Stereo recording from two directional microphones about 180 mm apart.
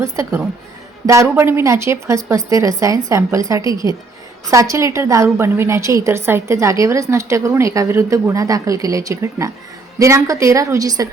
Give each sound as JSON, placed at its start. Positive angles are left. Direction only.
{"t": 0.0, "sound": "a woman's voice", "side_deg": -15}